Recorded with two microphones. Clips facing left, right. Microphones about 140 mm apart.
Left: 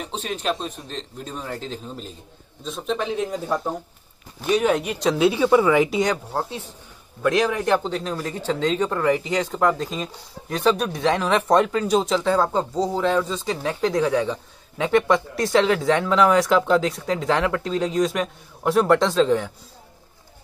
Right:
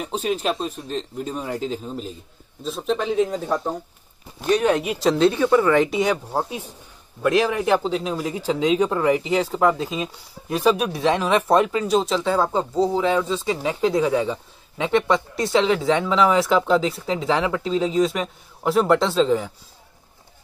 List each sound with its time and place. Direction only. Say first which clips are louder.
0.0 s speech: right 4 dB; 5° right (ahead or behind)
6.3 s speech: right 2 dB; 10° right (ahead or behind)